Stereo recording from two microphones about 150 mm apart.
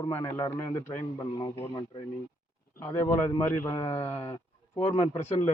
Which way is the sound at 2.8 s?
15° left (ahead or behind).